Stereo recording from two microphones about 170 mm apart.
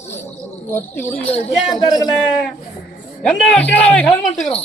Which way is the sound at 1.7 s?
25° left (ahead or behind).